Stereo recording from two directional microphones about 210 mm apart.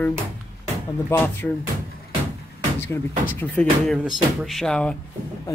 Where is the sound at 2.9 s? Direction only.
10° left (ahead or behind).